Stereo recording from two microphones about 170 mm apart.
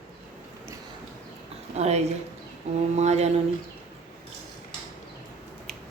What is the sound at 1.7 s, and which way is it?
Speech, 40° right (ahead or behind).